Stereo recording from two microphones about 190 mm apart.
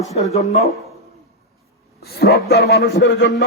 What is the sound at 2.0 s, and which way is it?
A man's voice, 55° left (ahead or behind).